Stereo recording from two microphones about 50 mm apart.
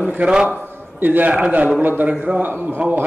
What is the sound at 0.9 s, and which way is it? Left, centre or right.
Speech, right.